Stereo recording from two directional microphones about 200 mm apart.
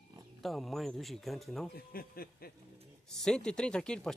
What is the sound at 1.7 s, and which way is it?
Speech, 50° left (ahead or behind).